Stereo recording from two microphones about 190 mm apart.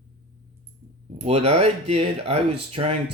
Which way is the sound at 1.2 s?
35° right (ahead or behind).